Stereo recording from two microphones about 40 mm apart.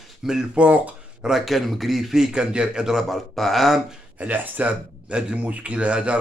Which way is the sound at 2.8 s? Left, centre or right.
Centre.